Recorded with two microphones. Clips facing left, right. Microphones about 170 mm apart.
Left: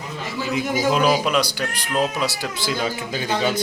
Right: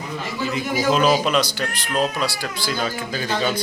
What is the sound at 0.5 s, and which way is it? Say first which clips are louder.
Speech: even; 10° left (ahead or behind).